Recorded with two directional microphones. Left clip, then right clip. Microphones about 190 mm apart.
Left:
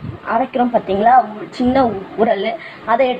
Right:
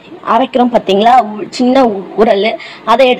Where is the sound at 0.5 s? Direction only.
25° right (ahead or behind).